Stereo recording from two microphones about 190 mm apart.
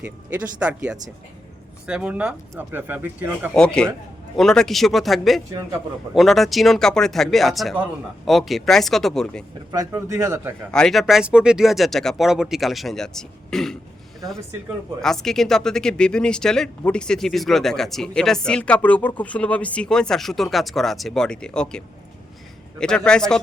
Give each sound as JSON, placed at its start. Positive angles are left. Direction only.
{"t": 0.0, "sound": "speech", "side_deg": -5}
{"t": 3.5, "sound": "speech", "side_deg": 5}
{"t": 9.7, "sound": "speech", "side_deg": -15}
{"t": 10.7, "sound": "speech", "side_deg": 5}
{"t": 15.0, "sound": "speech", "side_deg": 0}